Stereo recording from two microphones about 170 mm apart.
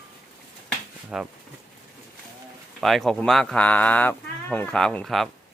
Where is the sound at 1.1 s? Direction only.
5° right (ahead or behind).